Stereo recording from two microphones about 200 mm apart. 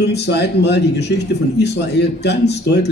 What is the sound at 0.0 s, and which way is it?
Speech, 55° left (ahead or behind).